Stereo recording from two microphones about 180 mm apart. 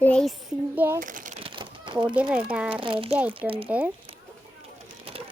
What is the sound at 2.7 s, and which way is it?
A child's voice, 30° right (ahead or behind).